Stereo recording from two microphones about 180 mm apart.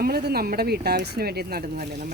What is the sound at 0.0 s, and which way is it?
A woman's voice, 60° right (ahead or behind).